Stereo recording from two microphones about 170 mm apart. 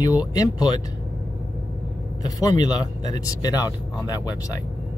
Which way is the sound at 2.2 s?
20° left (ahead or behind).